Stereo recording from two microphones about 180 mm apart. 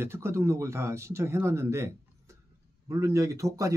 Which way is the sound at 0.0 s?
15° right (ahead or behind).